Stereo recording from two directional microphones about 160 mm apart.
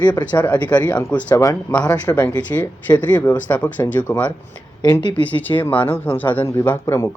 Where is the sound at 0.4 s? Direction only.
10° left (ahead or behind).